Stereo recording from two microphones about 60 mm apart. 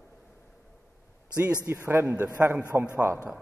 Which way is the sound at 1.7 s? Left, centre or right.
Right.